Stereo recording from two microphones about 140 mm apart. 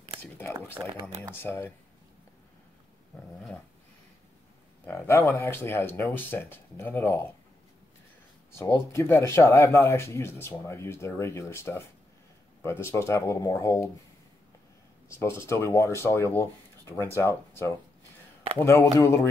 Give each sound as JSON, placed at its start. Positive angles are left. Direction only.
{"t": 0.2, "sound": "speech", "side_deg": 15}
{"t": 3.3, "sound": "speech", "side_deg": 5}
{"t": 4.8, "sound": "speech", "side_deg": 20}
{"t": 8.5, "sound": "speech", "side_deg": 20}
{"t": 15.0, "sound": "speech", "side_deg": 20}